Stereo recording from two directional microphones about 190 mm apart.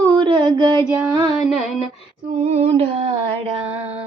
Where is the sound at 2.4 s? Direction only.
30° right (ahead or behind).